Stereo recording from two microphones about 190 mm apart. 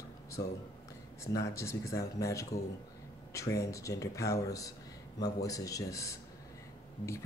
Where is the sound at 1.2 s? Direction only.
15° left (ahead or behind).